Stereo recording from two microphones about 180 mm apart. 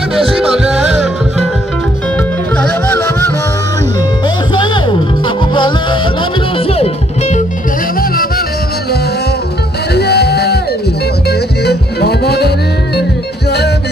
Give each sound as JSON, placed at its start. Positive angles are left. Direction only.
{"t": 0.1, "sound": "music", "side_deg": 0}
{"t": 2.5, "sound": "music", "side_deg": 10}
{"t": 4.6, "sound": "music", "side_deg": 25}
{"t": 6.7, "sound": "music", "side_deg": 35}
{"t": 9.9, "sound": "music", "side_deg": 65}